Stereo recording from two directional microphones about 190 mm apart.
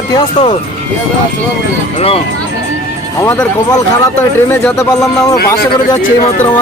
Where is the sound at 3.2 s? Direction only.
20° left (ahead or behind).